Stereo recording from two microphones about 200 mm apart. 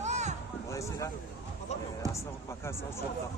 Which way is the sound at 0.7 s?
15° left (ahead or behind).